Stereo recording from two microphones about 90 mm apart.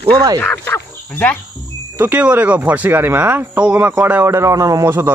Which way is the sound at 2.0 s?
20° right (ahead or behind).